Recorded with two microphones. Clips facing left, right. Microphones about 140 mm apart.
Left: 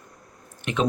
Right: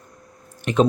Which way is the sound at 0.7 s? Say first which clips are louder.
Right 8 dB; 35° right (ahead or behind).